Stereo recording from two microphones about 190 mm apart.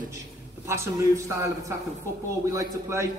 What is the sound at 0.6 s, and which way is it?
Speech, 15° right (ahead or behind).